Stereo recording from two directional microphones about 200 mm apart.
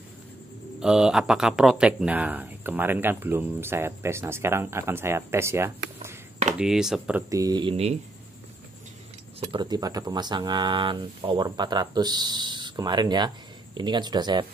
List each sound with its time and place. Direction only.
0.7 s speech: 5° right (ahead or behind)
7.2 s speech: 20° right (ahead or behind)
9.4 s speech: 20° right (ahead or behind)